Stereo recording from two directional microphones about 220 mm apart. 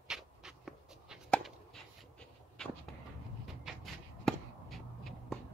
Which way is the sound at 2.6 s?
5° left (ahead or behind).